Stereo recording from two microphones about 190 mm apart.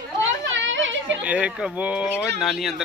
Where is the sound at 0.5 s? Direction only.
80° right.